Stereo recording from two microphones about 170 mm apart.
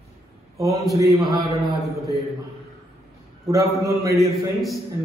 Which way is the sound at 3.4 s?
20° right (ahead or behind).